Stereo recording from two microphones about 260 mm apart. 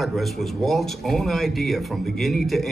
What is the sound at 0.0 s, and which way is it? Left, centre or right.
Speech, centre.